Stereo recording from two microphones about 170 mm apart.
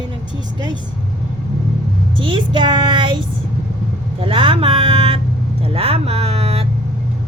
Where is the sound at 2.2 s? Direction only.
30° right (ahead or behind).